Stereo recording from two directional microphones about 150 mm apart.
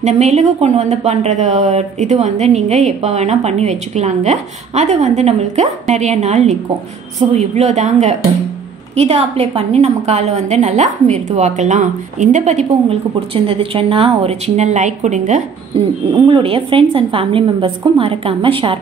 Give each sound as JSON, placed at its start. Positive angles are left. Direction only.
{"t": 0.0, "sound": "speech", "side_deg": -50}
{"t": 13.3, "sound": "speech", "side_deg": -40}
{"t": 16.3, "sound": "a woman's voice", "side_deg": -35}